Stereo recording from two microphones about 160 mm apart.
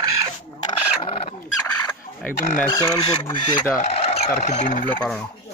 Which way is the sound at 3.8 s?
40° left (ahead or behind).